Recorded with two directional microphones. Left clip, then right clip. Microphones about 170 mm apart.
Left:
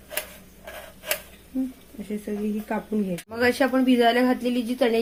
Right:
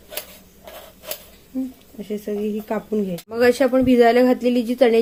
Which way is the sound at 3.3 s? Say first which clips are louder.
Right 6 dB; 65° right (ahead or behind).